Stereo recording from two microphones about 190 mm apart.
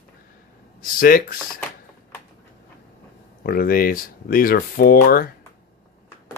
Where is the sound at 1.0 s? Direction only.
50° left (ahead or behind).